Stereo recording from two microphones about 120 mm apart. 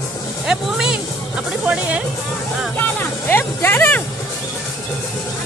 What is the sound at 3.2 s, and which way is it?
Speech, 20° left (ahead or behind).